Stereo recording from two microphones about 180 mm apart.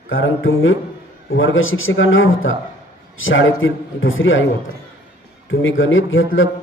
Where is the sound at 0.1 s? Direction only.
90° left.